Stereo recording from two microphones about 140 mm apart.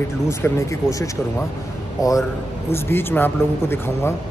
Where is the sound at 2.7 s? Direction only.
15° left (ahead or behind).